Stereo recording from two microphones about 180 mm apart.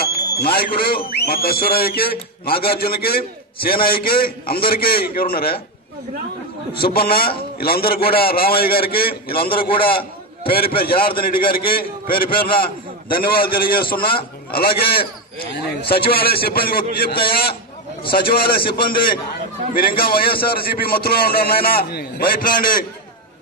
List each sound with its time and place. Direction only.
0.0 s speech: 60° left (ahead or behind)
6.8 s speech: 55° left (ahead or behind)